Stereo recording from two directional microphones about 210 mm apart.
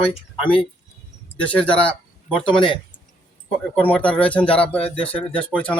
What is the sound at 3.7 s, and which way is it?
Speech, 5° left (ahead or behind).